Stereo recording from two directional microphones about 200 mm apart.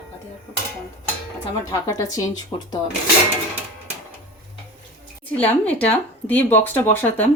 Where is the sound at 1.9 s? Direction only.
15° left (ahead or behind).